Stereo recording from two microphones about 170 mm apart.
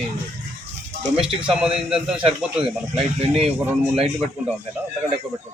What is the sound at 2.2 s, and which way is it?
Speech, 30° right (ahead or behind).